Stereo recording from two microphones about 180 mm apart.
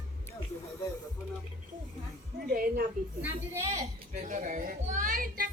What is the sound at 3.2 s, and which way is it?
Speech, 10° right (ahead or behind).